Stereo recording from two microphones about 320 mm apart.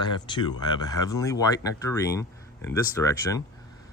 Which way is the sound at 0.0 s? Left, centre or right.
Centre.